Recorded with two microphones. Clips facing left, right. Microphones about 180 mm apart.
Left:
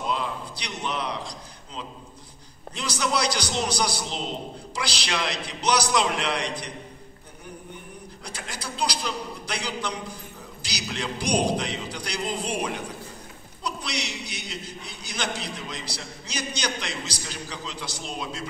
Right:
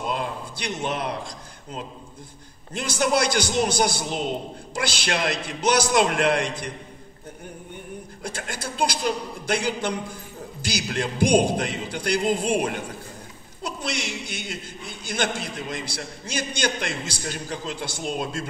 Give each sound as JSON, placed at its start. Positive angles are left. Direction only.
{"t": 0.1, "sound": "a sound", "side_deg": -50}
{"t": 2.7, "sound": "a man's voice", "side_deg": -50}
{"t": 8.2, "sound": "a man's voice", "side_deg": -50}